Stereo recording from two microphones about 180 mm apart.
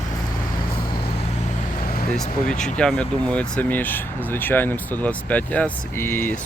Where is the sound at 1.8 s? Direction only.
55° left (ahead or behind).